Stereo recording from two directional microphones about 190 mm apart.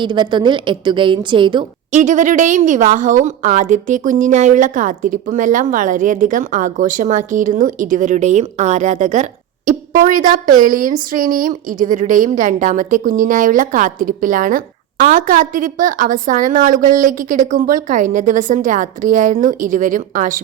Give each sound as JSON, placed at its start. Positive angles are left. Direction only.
{"t": 0.0, "sound": "a woman's voice", "side_deg": -25}
{"t": 1.9, "sound": "a woman's voice", "side_deg": -40}